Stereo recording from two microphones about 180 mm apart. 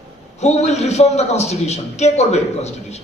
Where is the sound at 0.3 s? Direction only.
40° left (ahead or behind).